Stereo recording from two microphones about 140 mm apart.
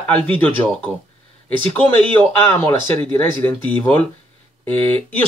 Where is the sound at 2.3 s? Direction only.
15° left (ahead or behind).